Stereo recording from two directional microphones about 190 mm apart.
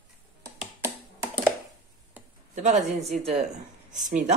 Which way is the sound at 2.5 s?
40° right (ahead or behind).